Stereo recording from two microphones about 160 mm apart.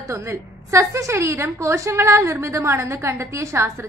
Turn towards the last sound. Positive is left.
turn(degrees=-20)  # may be behind; listen again after turning